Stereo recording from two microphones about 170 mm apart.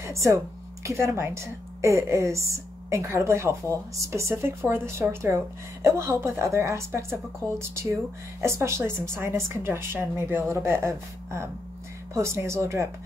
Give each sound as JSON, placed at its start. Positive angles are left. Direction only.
{"t": 0.0, "sound": "a woman's voice", "side_deg": -15}